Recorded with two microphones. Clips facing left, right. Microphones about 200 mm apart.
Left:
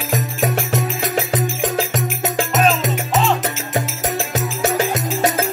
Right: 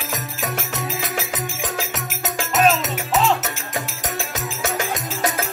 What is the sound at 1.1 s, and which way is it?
Music, 35° left (ahead or behind).